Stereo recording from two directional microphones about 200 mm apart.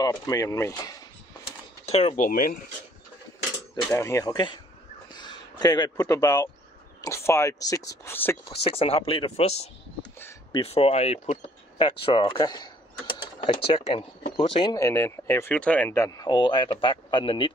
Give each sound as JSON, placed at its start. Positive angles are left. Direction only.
{"t": 0.0, "sound": "speech", "side_deg": 15}
{"t": 1.9, "sound": "speech", "side_deg": 35}
{"t": 3.7, "sound": "speech", "side_deg": 15}
{"t": 8.5, "sound": "speech", "side_deg": 25}
{"t": 13.7, "sound": "speech", "side_deg": 25}